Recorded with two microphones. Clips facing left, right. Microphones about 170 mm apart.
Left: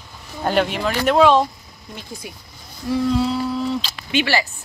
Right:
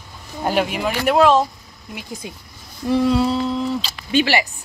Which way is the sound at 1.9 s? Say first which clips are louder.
Right 3 dB; 20° right (ahead or behind).